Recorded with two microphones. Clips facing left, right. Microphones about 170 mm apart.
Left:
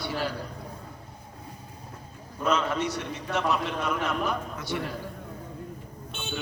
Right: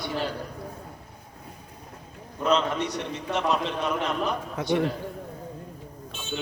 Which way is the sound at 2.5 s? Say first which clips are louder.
Right 2 dB; 20° right (ahead or behind).